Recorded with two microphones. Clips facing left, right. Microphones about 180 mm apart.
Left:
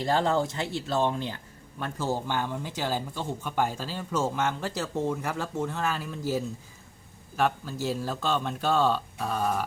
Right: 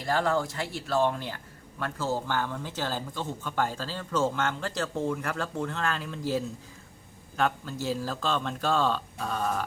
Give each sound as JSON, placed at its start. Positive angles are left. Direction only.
{"t": 0.0, "sound": "a man's voice", "side_deg": 25}